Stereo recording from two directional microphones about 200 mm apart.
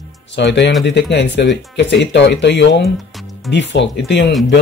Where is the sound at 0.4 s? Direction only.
60° left (ahead or behind).